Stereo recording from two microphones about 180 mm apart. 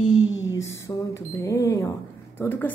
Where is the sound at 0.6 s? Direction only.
15° left (ahead or behind).